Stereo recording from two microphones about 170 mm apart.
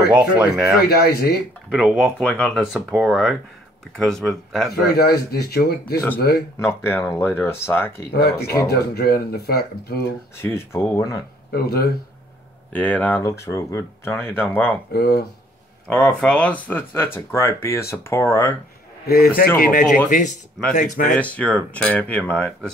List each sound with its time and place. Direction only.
0.0 s speech: 5° right (ahead or behind)
0.8 s speech: 65° left (ahead or behind)
1.7 s speech: 5° right (ahead or behind)
2.2 s speech: 5° left (ahead or behind)
4.9 s speech: 65° left (ahead or behind)
6.6 s speech: 15° left (ahead or behind)
8.6 s speech: 70° left (ahead or behind)
10.3 s speech: 15° left (ahead or behind)
11.5 s speech: 65° left (ahead or behind)
12.7 s speech: 10° left (ahead or behind)
14.9 s speech: 65° left (ahead or behind)
15.9 s speech: 5° left (ahead or behind)
19.0 s speech: 65° left (ahead or behind); by 21.2 s 45° left (ahead or behind)
21.2 s speech: 10° left (ahead or behind)